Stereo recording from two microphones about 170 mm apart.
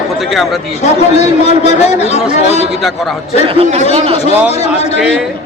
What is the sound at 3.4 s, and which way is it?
Speech, 35° right (ahead or behind).